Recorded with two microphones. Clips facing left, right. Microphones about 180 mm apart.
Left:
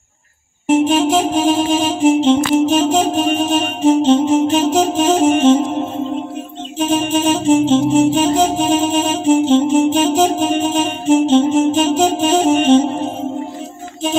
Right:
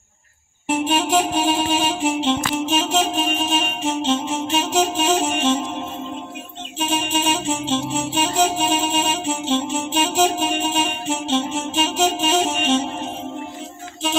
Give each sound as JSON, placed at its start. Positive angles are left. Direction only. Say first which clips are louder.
{"t": 0.7, "sound": "music", "louder": "left 7 dB", "side_deg": 45}
{"t": 8.1, "sound": "music", "louder": "left 6 dB", "side_deg": 40}